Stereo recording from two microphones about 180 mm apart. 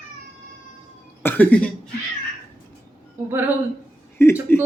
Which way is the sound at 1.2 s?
10° left (ahead or behind).